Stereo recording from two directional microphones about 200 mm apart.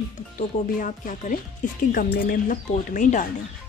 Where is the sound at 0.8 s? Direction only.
40° left (ahead or behind).